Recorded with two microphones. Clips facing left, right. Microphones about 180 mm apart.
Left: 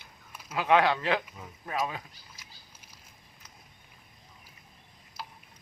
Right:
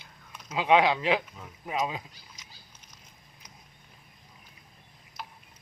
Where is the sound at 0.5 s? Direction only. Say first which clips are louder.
Right 1 dB; 15° right (ahead or behind).